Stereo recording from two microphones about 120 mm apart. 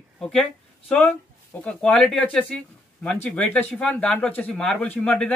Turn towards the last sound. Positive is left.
turn(degrees=10)  # may be behind; listen again after turning